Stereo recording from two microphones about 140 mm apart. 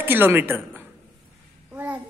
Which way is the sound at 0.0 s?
15° right (ahead or behind).